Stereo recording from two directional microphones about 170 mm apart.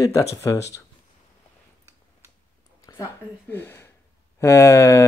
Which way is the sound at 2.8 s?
20° left (ahead or behind).